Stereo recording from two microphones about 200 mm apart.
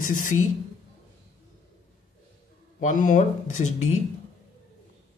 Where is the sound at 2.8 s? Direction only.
40° left (ahead or behind).